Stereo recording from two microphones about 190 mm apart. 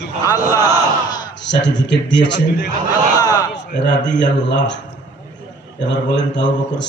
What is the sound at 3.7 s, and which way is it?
A man's voice, 65° left (ahead or behind).